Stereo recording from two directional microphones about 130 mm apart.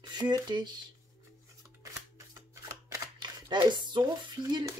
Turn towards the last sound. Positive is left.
turn(degrees=-30)  # may be behind; listen again after turning